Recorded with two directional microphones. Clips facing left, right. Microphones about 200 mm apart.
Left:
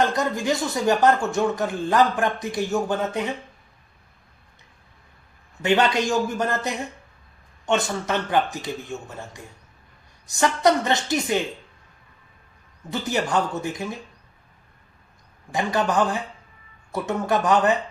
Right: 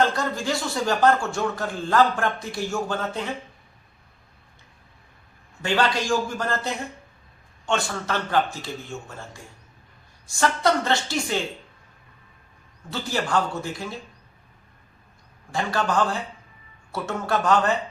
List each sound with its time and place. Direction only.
0.1 s speech: 20° left (ahead or behind)
5.6 s speech: 20° left (ahead or behind)
12.9 s speech: 20° left (ahead or behind)
15.5 s speech: 15° left (ahead or behind)